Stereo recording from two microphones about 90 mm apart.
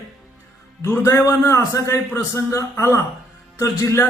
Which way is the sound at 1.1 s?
40° left (ahead or behind).